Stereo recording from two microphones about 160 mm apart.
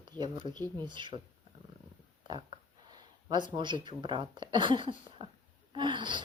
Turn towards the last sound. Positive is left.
turn(degrees=-30)  # may be behind; listen again after turning